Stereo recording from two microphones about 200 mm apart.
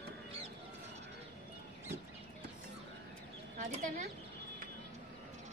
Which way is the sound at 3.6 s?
35° right (ahead or behind).